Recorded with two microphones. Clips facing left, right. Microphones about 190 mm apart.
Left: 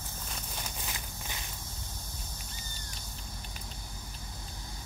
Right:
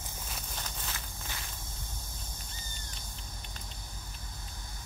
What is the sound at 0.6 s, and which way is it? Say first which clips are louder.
Walk: left 1 dB; 15° left (ahead or behind).